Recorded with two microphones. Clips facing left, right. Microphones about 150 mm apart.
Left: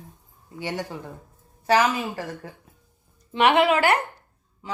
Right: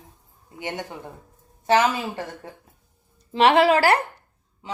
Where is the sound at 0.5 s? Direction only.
20° right (ahead or behind).